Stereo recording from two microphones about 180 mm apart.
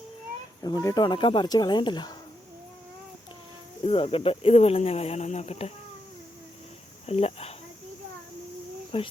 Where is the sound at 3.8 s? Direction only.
30° left (ahead or behind).